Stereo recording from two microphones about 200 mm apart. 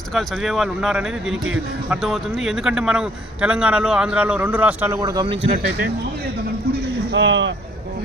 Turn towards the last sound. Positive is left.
turn(degrees=-65)  # may be behind; listen again after turning